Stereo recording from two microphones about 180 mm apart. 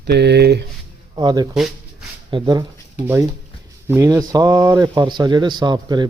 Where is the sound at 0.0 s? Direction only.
65° right (ahead or behind).